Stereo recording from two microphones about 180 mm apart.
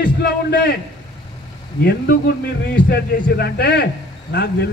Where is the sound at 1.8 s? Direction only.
60° left (ahead or behind).